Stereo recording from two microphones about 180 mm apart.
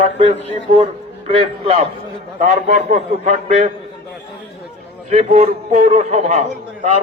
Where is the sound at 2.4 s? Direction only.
45° right (ahead or behind).